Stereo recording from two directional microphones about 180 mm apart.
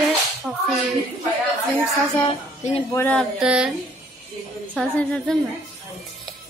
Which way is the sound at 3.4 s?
5° right (ahead or behind).